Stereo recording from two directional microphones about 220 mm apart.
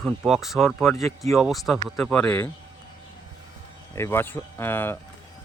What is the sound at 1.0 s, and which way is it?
Speech, 15° left (ahead or behind).